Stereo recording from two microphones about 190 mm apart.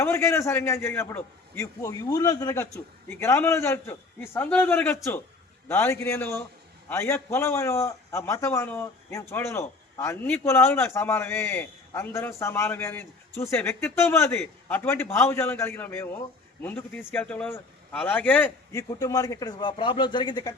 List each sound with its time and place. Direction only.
0.0 s a man's voice: 15° left (ahead or behind)